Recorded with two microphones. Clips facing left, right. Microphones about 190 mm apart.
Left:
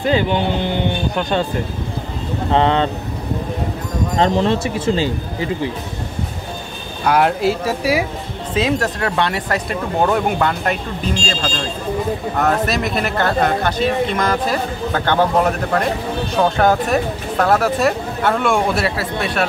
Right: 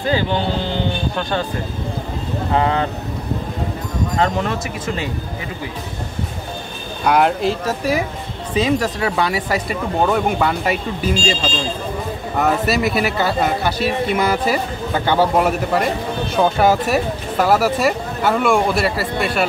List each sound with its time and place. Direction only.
2.5 s a man's voice: 25° left (ahead or behind)
4.2 s a man's voice: 30° left (ahead or behind)
7.1 s speech: centre (ahead or behind)